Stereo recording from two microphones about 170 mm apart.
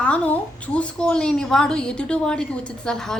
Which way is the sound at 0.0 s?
5° left (ahead or behind).